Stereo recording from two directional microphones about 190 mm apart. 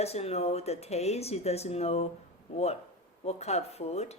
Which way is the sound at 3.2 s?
35° left (ahead or behind).